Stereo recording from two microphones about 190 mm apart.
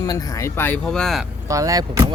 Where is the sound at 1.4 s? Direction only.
15° right (ahead or behind).